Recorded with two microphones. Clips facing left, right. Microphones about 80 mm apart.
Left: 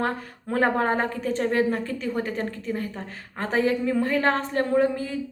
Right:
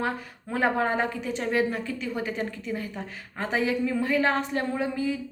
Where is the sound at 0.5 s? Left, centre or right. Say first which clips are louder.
Left 2 dB; left.